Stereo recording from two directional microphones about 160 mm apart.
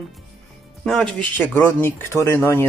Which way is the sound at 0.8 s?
5° left (ahead or behind).